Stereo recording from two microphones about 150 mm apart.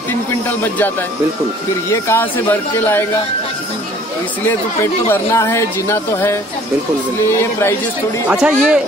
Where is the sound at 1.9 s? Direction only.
15° left (ahead or behind).